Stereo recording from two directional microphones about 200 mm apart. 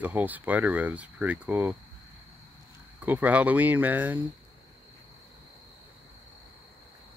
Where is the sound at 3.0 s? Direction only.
10° right (ahead or behind).